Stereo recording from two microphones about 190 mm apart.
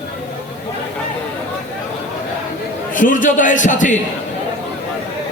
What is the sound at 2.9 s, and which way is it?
A man's voice, 45° left (ahead or behind).